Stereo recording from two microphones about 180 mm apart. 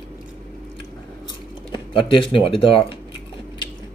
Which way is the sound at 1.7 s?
30° left (ahead or behind).